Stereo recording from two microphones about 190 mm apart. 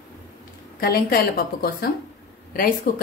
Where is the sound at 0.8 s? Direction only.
55° left (ahead or behind).